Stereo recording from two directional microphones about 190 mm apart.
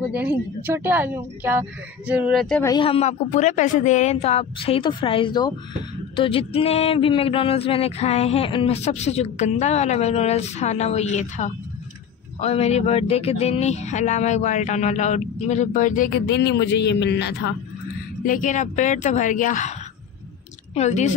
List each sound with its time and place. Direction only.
0.1 s speech: 10° right (ahead or behind)
2.6 s speech: 25° left (ahead or behind); by 16.1 s 40° left (ahead or behind)
16.3 s a man's voice: 65° left (ahead or behind)
18.2 s speech: 45° left (ahead or behind)
20.7 s speech: 35° left (ahead or behind)